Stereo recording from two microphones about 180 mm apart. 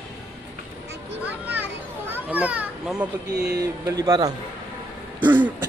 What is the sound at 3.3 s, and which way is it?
Speech, 65° right (ahead or behind).